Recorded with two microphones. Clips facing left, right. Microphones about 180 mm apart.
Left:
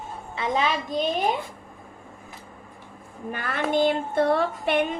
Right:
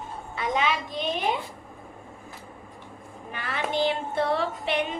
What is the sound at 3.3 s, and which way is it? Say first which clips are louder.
A woman's voice: left 4 dB; 50° left (ahead or behind).